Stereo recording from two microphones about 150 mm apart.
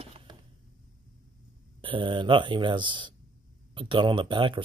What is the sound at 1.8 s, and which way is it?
Speech, 35° right (ahead or behind).